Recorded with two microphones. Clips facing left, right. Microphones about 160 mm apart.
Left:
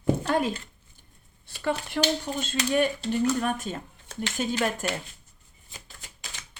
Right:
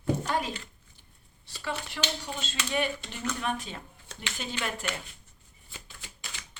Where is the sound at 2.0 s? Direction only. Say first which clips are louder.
Left 8 dB; 45° left (ahead or behind).